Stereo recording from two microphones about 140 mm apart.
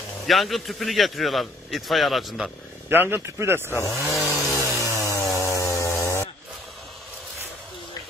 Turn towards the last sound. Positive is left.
turn(degrees=20)  # may be behind; listen again after turning